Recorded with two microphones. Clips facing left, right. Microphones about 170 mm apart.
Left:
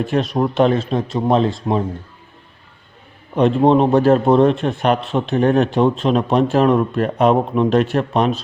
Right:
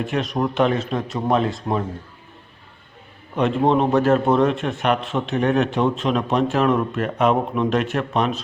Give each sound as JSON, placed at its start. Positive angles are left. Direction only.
{"t": 0.0, "sound": "a man's voice", "side_deg": 35}
{"t": 3.3, "sound": "a man's voice", "side_deg": 30}